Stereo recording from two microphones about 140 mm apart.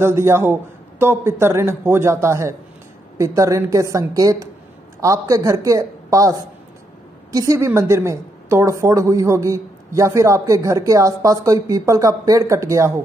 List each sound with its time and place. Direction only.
0.0 s a man's voice: 20° right (ahead or behind)